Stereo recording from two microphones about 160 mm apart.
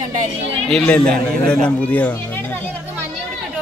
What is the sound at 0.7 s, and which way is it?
A man's voice, 10° left (ahead or behind).